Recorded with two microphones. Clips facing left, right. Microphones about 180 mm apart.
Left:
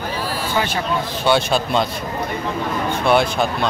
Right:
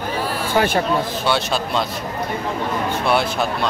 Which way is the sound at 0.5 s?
50° right (ahead or behind).